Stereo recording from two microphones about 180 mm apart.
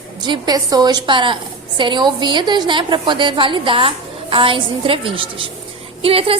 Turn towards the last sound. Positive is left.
turn(degrees=-30)  # may be behind; listen again after turning